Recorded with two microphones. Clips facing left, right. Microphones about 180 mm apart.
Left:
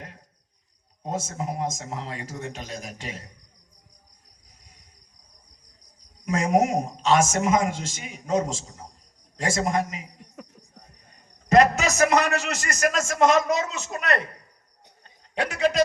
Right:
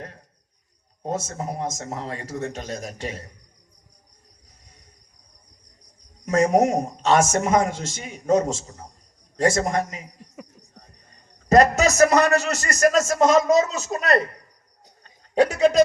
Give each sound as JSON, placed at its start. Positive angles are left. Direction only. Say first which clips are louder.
{"t": 1.0, "sound": "a man's voice", "louder": "right 2 dB", "side_deg": -40}
{"t": 6.2, "sound": "a man's voice", "louder": "right 3 dB", "side_deg": -40}
{"t": 9.4, "sound": "a man's voice", "louder": "right 4 dB", "side_deg": -45}
{"t": 11.4, "sound": "a man's voice", "louder": "right 2 dB", "side_deg": -40}
{"t": 15.4, "sound": "a man's voice", "louder": "right 6 dB", "side_deg": -45}